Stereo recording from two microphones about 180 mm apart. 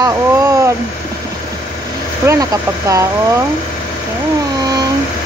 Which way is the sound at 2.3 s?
15° right (ahead or behind).